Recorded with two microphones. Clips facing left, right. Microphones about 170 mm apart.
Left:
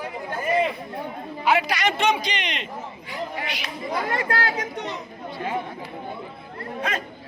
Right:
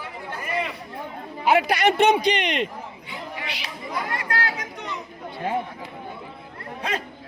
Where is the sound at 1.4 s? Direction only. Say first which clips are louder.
Right 3 dB; 50° right (ahead or behind).